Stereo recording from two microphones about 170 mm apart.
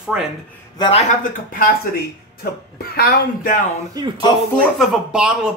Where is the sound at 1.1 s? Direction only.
55° left (ahead or behind).